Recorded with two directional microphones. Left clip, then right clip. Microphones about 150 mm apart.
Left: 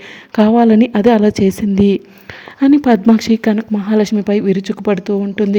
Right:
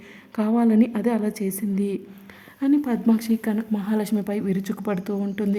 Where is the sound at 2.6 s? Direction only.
50° left (ahead or behind).